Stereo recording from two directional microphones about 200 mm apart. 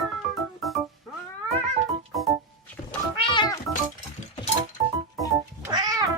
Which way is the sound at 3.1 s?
25° left (ahead or behind).